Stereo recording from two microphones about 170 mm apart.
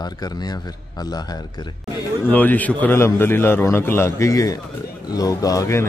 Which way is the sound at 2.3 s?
10° left (ahead or behind).